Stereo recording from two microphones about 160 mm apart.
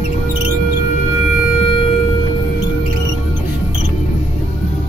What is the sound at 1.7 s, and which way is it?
Music, 35° left (ahead or behind).